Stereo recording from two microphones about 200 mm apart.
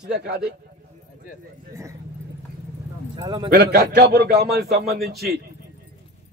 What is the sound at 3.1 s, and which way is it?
Speech, 20° right (ahead or behind).